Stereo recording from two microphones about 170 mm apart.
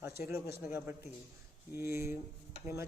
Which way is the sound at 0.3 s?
15° right (ahead or behind).